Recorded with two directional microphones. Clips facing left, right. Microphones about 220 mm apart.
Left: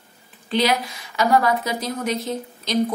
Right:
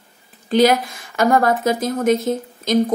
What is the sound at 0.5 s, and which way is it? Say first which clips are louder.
A woman's voice: right 6 dB; 45° right (ahead or behind).